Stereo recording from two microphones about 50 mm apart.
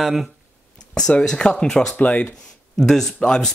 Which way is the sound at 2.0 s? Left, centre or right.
Left.